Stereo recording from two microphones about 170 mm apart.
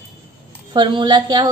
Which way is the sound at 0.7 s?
25° right (ahead or behind).